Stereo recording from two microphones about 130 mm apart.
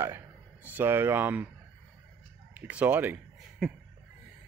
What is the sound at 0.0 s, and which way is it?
Speech, 15° right (ahead or behind).